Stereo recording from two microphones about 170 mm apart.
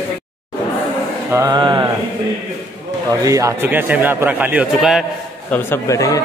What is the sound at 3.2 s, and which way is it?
A man's voice, 20° right (ahead or behind).